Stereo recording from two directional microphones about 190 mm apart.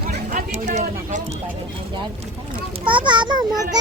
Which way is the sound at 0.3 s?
40° right (ahead or behind).